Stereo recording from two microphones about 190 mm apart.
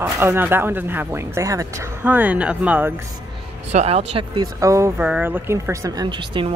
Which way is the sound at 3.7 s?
35° right (ahead or behind).